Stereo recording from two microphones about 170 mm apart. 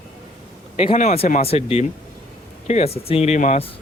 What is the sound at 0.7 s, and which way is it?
Speech, 35° left (ahead or behind).